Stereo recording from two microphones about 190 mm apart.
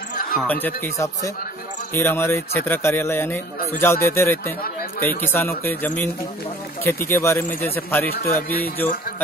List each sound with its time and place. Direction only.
0.4 s speech: 10° left (ahead or behind)
8.1 s a man's voice: 55° left (ahead or behind)
8.8 s speech: 10° left (ahead or behind)